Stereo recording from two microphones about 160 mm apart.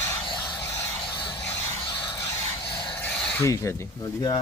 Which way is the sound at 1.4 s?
15° left (ahead or behind).